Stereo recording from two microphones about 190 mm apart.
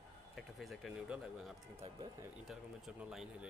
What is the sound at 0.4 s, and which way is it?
Speech, centre (ahead or behind).